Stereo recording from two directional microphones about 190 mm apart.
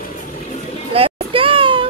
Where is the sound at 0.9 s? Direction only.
30° right (ahead or behind).